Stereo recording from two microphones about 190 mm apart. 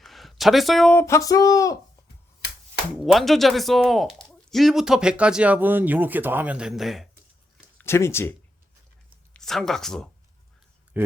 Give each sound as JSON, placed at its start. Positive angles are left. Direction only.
{"t": 0.0, "sound": "a sound", "side_deg": 0}
{"t": 0.9, "sound": "a sound", "side_deg": 15}
{"t": 3.0, "sound": "speech", "side_deg": 0}
{"t": 7.8, "sound": "speech", "side_deg": 15}
{"t": 9.3, "sound": "speech", "side_deg": 0}
{"t": 10.9, "sound": "speech", "side_deg": -10}